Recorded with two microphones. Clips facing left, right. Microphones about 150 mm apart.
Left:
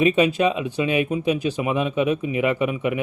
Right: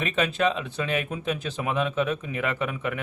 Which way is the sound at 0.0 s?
15° left (ahead or behind).